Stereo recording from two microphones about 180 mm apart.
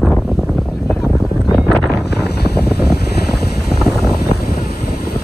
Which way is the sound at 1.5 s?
Centre (ahead or behind).